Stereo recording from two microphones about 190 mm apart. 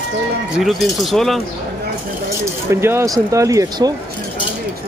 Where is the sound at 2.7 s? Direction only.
15° right (ahead or behind).